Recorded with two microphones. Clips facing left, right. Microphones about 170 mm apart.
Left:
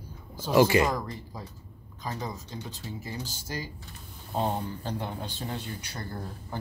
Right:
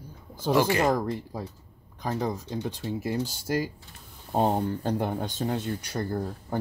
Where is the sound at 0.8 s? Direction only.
60° right (ahead or behind).